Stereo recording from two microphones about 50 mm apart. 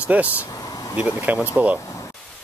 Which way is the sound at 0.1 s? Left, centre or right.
Right.